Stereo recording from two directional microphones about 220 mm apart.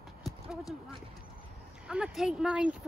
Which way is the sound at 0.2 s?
Centre (ahead or behind).